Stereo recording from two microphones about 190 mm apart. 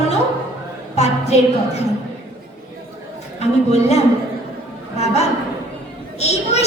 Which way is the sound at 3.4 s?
35° left (ahead or behind).